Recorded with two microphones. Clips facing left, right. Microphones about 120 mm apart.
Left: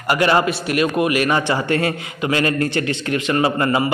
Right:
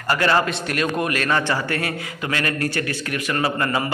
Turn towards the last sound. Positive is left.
turn(degrees=20)  # may be behind; listen again after turning